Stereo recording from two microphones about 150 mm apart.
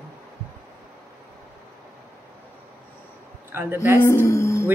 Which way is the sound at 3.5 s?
15° right (ahead or behind).